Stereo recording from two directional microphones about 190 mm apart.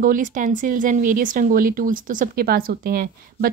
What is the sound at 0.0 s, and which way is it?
Speech, 45° right (ahead or behind).